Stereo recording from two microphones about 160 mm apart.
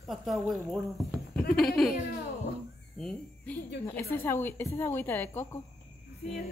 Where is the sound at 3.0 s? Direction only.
5° left (ahead or behind).